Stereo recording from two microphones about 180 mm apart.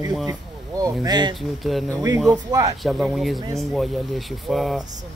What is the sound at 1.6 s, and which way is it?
Speech, centre (ahead or behind).